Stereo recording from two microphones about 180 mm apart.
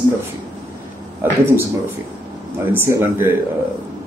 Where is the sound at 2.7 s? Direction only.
10° right (ahead or behind).